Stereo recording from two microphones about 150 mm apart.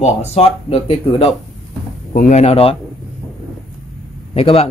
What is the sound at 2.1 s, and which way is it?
Speech, 55° left (ahead or behind).